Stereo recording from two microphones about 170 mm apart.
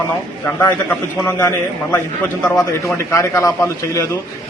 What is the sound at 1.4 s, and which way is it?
A man's voice, 15° left (ahead or behind).